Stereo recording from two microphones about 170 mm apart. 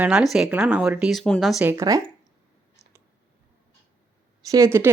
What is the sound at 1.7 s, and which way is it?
Speech, 20° right (ahead or behind).